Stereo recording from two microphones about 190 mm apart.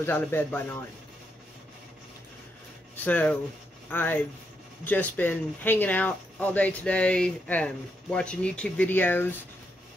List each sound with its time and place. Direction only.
0.0 s speech: 10° left (ahead or behind)
3.0 s speech: 10° left (ahead or behind)